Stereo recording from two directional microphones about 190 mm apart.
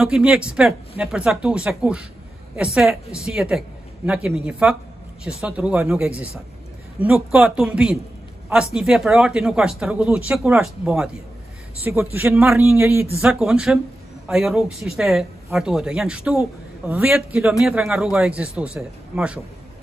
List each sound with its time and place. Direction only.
0.0 s a man's voice: 5° right (ahead or behind)